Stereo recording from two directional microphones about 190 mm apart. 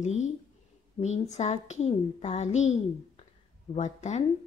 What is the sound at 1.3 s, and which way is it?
A woman's voice, 35° left (ahead or behind).